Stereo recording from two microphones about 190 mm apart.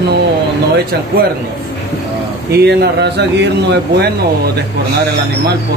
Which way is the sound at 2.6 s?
60° right (ahead or behind).